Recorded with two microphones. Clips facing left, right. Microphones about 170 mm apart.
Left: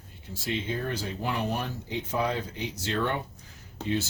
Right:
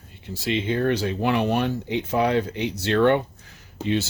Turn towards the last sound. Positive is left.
turn(degrees=-80)